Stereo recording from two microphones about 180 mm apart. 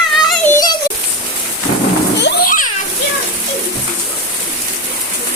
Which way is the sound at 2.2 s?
60° left (ahead or behind).